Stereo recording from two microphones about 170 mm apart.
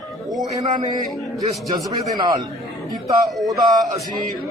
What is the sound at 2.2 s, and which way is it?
Speech, 20° right (ahead or behind).